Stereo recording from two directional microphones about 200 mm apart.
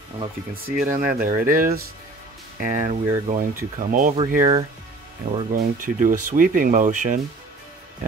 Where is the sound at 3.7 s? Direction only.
40° right (ahead or behind).